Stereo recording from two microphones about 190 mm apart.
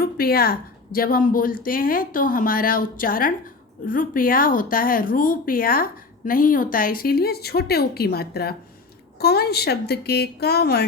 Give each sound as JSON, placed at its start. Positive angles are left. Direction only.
{"t": 0.0, "sound": "a woman's voice", "side_deg": 55}